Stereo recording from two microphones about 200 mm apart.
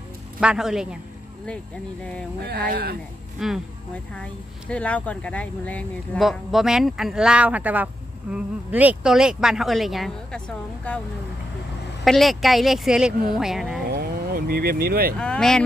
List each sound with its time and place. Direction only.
0.4 s a woman's voice: 5° right (ahead or behind)
2.7 s speech: 50° right (ahead or behind)
3.3 s a woman's voice: centre (ahead or behind)
12.0 s a woman's voice: centre (ahead or behind)
13.8 s vehicle: 50° right (ahead or behind)
15.1 s a woman's voice: 5° left (ahead or behind)